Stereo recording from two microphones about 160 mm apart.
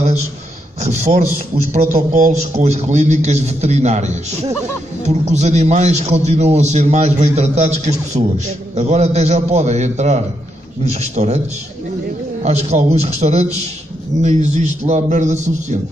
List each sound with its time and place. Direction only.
1.7 s a man's voice: 45° right (ahead or behind)
12.4 s a man's voice: 45° right (ahead or behind)